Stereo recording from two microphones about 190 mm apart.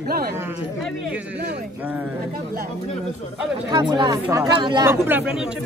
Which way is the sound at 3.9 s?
20° right (ahead or behind).